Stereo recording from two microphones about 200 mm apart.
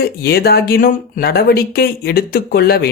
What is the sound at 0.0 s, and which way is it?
Speech, 50° left (ahead or behind).